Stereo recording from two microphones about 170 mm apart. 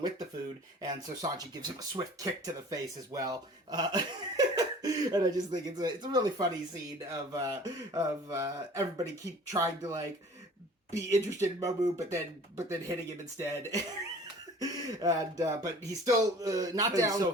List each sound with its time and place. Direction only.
0.8 s speech: 20° right (ahead or behind)